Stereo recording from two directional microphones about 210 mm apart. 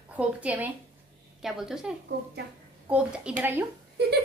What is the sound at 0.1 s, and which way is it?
A woman's voice, 5° right (ahead or behind).